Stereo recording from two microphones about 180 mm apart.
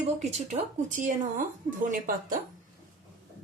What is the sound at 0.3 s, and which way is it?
Speech, 40° right (ahead or behind).